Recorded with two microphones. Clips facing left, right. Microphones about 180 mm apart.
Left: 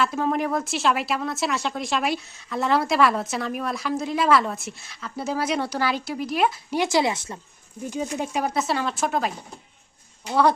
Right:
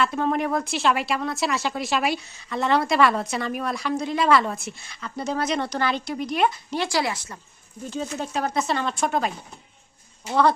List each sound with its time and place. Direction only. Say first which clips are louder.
0.0 s speech: even; centre (ahead or behind)
6.8 s speech: left 4 dB; 20° left (ahead or behind); by 9.3 s centre (ahead or behind)